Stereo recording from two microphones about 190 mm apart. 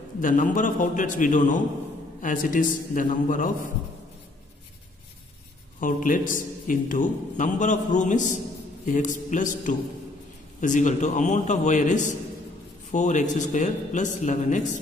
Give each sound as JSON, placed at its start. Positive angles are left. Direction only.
{"t": 0.2, "sound": "a man's voice", "side_deg": 40}
{"t": 5.8, "sound": "a man's voice", "side_deg": 45}